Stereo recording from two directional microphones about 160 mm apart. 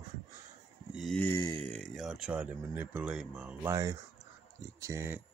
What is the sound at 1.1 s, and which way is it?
Speech, 15° left (ahead or behind).